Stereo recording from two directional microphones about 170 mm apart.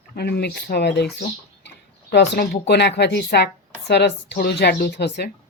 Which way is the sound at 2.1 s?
85° left.